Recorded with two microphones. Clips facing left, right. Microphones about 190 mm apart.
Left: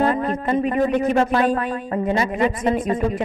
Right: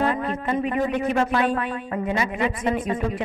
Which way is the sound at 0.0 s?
40° left (ahead or behind).